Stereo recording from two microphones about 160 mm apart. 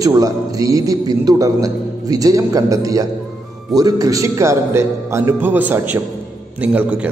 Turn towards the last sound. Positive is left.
turn(degrees=-10)  # may be behind; listen again after turning